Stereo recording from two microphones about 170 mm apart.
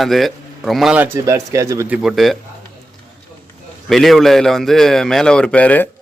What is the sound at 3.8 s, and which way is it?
A man's voice, centre (ahead or behind).